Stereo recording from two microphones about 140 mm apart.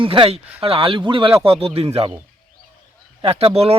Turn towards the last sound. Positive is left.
turn(degrees=-45)  # may be behind; listen again after turning